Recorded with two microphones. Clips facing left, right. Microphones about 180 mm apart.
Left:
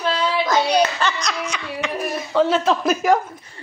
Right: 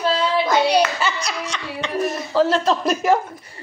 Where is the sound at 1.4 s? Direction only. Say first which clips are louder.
Left 1 dB; 5° left (ahead or behind).